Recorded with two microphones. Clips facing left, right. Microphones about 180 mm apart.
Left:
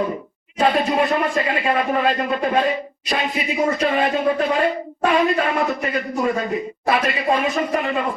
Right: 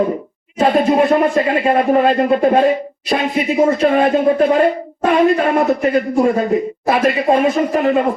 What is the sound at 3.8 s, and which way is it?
Speech, 50° right (ahead or behind).